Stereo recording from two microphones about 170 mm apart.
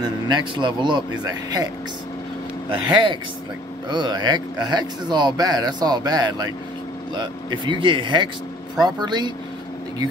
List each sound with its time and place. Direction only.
0.0 s speech: 25° right (ahead or behind)
2.9 s speech: 30° right (ahead or behind)